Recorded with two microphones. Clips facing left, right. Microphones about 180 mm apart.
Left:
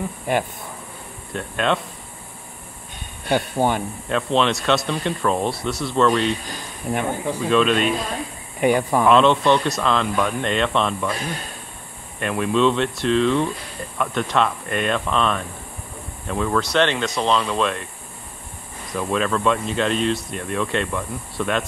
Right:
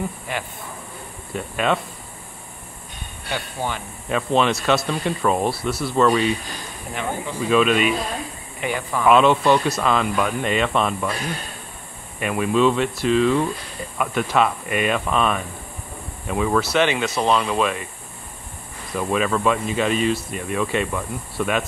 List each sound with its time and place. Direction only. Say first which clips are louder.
1.3 s speech: even; 5° right (ahead or behind)
3.3 s speech: left 8 dB; 45° left (ahead or behind)
4.1 s speech: even; 5° right (ahead or behind)
6.9 s speech: left 4 dB; 50° left (ahead or behind)
7.3 s speech: right 1 dB; 5° right (ahead or behind)
8.5 s speech: left 7 dB; 45° left (ahead or behind)
9.0 s speech: right 2 dB; 5° right (ahead or behind)
12.2 s speech: even; 5° right (ahead or behind)
18.9 s speech: right 1 dB; 5° right (ahead or behind)